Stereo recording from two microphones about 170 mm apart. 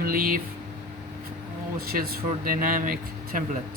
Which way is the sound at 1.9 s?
60° right (ahead or behind).